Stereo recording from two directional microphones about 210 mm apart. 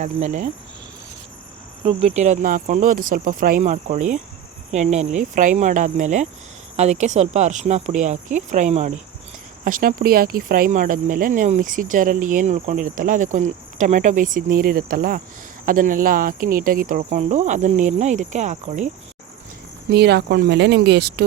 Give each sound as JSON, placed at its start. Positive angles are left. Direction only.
{"t": 0.0, "sound": "speech", "side_deg": -35}
{"t": 1.8, "sound": "speech", "side_deg": -25}
{"t": 19.9, "sound": "speech", "side_deg": -50}